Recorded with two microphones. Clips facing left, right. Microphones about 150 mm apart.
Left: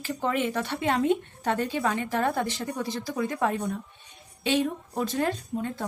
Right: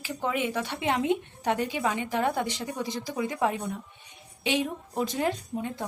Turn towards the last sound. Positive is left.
turn(degrees=-15)  # may be behind; listen again after turning